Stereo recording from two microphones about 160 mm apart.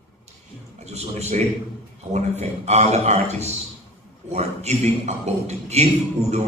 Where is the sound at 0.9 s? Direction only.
45° right (ahead or behind).